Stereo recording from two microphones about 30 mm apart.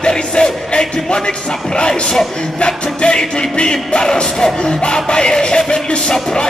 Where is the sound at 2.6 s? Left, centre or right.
Left.